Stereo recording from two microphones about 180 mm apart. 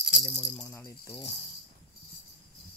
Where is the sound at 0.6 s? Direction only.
15° left (ahead or behind).